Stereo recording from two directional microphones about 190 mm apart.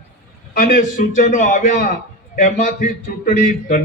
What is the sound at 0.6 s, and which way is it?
A man's voice, 45° left (ahead or behind).